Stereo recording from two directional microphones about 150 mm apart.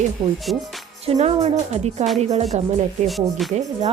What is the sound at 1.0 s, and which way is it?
A woman's voice, 45° right (ahead or behind).